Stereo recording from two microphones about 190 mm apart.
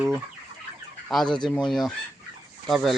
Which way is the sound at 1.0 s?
Centre (ahead or behind).